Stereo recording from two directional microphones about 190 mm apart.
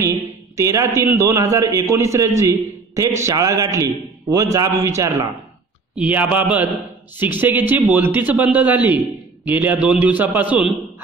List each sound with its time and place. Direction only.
0.0 s a man's voice: 15° right (ahead or behind)